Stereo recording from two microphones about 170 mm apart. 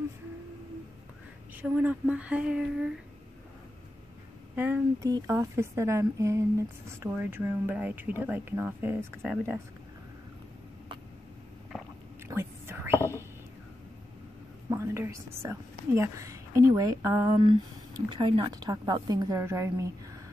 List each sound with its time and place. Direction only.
1.6 s speech: 10° right (ahead or behind)
4.6 s speech: 10° right (ahead or behind)
11.7 s a sound: centre (ahead or behind)
12.3 s whispering: 15° right (ahead or behind)
14.7 s speech: 15° right (ahead or behind)
18.1 s a woman's voice: 30° right (ahead or behind)